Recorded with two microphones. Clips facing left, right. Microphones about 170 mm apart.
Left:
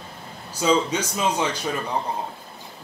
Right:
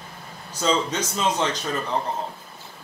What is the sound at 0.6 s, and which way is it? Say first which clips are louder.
A man's voice: left 2 dB; 10° left (ahead or behind).